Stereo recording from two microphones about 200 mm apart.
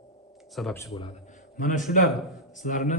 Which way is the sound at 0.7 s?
15° left (ahead or behind).